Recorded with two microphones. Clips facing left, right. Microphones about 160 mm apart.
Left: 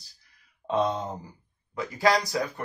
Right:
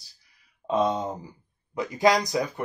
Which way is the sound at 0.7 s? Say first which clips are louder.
Right 2 dB; 15° right (ahead or behind).